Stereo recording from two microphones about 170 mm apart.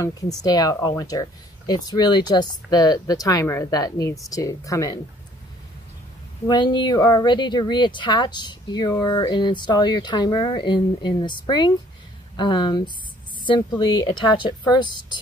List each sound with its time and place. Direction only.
0.4 s speech: 20° left (ahead or behind)
6.4 s speech: 25° left (ahead or behind)